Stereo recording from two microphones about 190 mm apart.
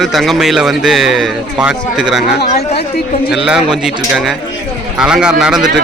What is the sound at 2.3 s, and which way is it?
Speech, 60° left (ahead or behind).